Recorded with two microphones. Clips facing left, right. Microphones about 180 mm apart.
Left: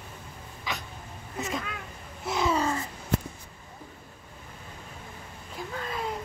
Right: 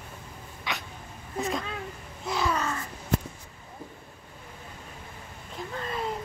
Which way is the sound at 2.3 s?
25° left (ahead or behind).